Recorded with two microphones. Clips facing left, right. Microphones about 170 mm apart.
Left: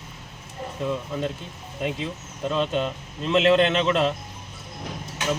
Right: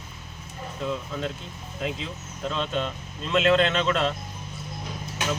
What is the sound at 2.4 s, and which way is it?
A man's voice, 15° left (ahead or behind).